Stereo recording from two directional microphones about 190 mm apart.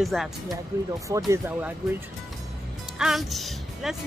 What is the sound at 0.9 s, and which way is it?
Speech, 15° right (ahead or behind).